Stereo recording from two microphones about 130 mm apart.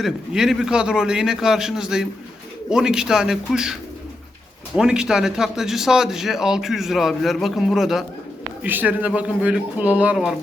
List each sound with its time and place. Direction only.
0.0 s a man's voice: 5° right (ahead or behind)
8.6 s speech: 15° right (ahead or behind)